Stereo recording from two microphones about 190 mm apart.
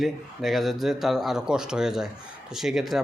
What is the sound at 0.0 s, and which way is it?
Speech, centre (ahead or behind).